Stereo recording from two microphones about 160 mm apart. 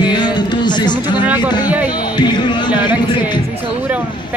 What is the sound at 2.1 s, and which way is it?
Speech, 25° left (ahead or behind).